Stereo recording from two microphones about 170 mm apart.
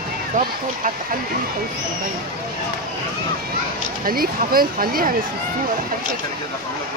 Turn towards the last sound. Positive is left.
turn(degrees=-60)  # may be behind; listen again after turning